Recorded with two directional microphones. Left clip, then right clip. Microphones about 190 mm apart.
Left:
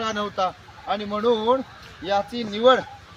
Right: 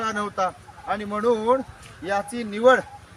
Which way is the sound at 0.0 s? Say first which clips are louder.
Even; 10° left (ahead or behind).